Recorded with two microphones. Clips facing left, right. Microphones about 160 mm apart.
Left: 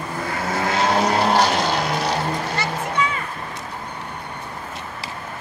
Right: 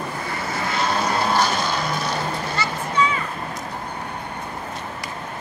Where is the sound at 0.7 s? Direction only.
90° left.